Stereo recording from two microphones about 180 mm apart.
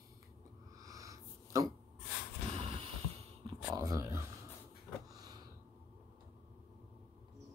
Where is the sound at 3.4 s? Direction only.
20° right (ahead or behind).